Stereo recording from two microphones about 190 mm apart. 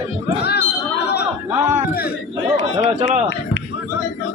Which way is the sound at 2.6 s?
70° left (ahead or behind).